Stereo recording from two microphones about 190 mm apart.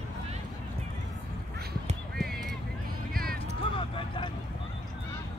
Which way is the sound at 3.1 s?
50° right (ahead or behind).